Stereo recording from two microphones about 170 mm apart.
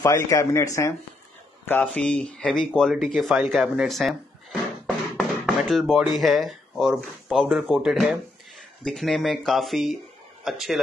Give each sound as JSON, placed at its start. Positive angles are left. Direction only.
{"t": 0.0, "sound": "speech", "side_deg": 20}
{"t": 1.7, "sound": "speech", "side_deg": 5}